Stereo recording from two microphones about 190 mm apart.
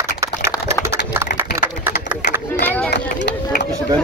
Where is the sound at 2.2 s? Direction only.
40° left (ahead or behind).